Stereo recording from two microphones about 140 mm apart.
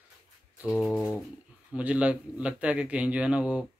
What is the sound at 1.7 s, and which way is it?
A man's voice, 10° right (ahead or behind).